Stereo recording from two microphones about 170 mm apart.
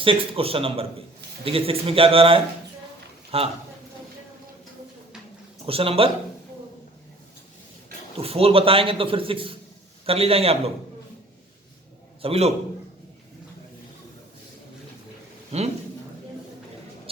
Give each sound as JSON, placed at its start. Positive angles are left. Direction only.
{"t": 0.0, "sound": "a man's voice", "side_deg": -30}
{"t": 5.6, "sound": "a man's voice", "side_deg": -35}
{"t": 8.2, "sound": "a man's voice", "side_deg": -35}
{"t": 12.2, "sound": "a man's voice", "side_deg": -35}
{"t": 15.5, "sound": "a man's voice", "side_deg": -40}